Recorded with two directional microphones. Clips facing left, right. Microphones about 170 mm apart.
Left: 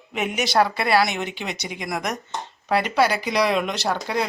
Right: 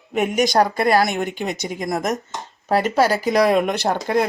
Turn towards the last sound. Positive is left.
turn(degrees=-50)  # may be behind; listen again after turning